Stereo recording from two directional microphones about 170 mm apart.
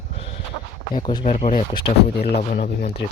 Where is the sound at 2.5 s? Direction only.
55° left (ahead or behind).